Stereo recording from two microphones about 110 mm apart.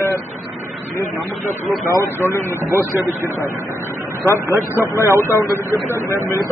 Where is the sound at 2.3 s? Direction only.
25° left (ahead or behind).